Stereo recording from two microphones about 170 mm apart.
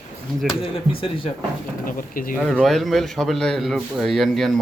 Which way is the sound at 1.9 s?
55° left (ahead or behind).